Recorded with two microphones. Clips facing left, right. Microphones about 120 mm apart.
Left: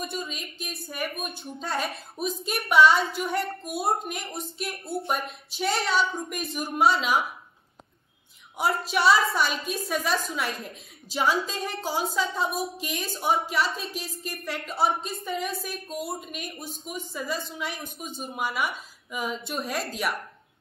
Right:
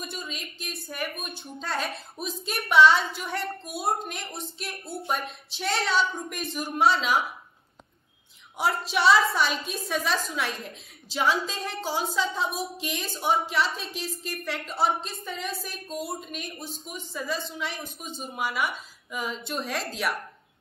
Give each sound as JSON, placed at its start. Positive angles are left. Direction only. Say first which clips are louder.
{"t": 0.0, "sound": "speech", "louder": "left 3 dB", "side_deg": 0}
{"t": 3.3, "sound": "a woman's voice", "louder": "left 3 dB", "side_deg": 50}
{"t": 3.8, "sound": "speech", "louder": "left 1 dB", "side_deg": 0}
{"t": 8.5, "sound": "speech", "louder": "left 1 dB", "side_deg": 0}